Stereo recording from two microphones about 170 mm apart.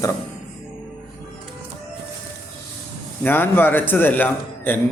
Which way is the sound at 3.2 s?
10° left (ahead or behind).